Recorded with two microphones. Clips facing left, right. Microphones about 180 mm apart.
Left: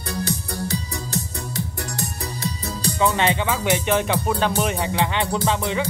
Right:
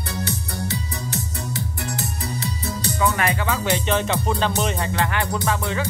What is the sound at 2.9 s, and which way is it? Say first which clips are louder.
Music: left 2 dB; 25° left (ahead or behind).